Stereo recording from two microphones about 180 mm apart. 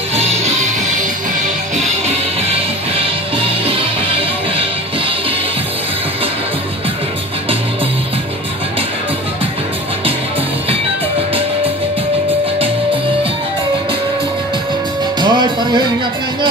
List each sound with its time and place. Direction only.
15.1 s music: 25° right (ahead or behind)